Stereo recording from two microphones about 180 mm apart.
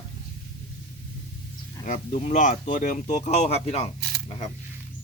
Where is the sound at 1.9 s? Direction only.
40° left (ahead or behind).